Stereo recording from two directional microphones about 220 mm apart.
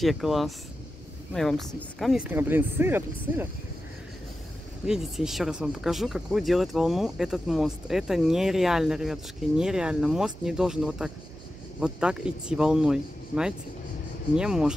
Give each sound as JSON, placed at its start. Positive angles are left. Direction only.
{"t": 0.0, "sound": "speech", "side_deg": 0}
{"t": 4.8, "sound": "speech", "side_deg": 0}